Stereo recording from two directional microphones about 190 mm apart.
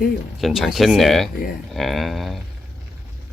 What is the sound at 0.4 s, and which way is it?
Speech, centre (ahead or behind).